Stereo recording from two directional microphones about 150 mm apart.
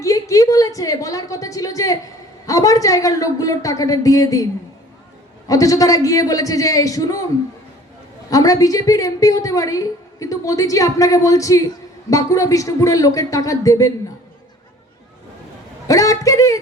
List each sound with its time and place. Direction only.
0.0 s a woman's voice: 20° left (ahead or behind)
5.5 s a woman's voice: 20° left (ahead or behind)
8.3 s a woman's voice: 25° left (ahead or behind)
15.9 s speech: 20° left (ahead or behind)